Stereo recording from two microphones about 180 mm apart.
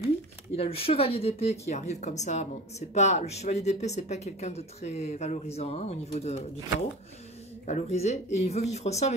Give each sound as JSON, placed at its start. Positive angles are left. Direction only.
{"t": 0.6, "sound": "speech", "side_deg": 30}
{"t": 7.6, "sound": "speech", "side_deg": 40}